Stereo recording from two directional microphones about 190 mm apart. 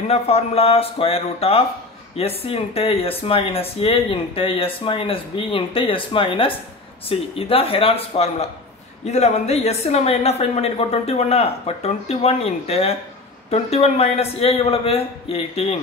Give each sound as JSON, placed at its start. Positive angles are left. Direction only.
{"t": 0.1, "sound": "a woman's voice", "side_deg": 30}